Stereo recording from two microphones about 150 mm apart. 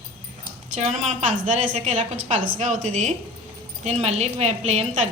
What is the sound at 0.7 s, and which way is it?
A woman's voice, 50° right (ahead or behind).